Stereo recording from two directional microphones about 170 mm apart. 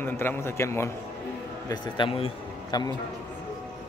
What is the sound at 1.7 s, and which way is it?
A man's voice, 30° left (ahead or behind).